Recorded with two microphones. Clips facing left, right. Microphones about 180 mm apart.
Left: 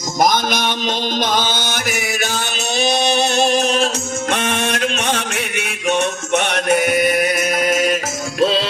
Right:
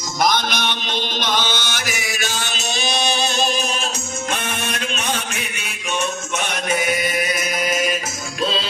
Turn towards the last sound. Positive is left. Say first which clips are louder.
# left 5 dB
turn(degrees=70)  # may be behind; listen again after turning